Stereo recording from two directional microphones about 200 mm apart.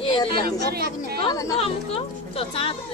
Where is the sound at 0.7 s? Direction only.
50° right (ahead or behind).